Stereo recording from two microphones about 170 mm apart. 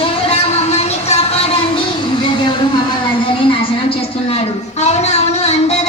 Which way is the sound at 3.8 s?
35° left (ahead or behind).